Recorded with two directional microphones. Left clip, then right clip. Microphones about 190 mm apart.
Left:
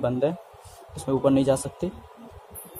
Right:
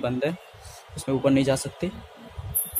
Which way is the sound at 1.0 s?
40° right (ahead or behind).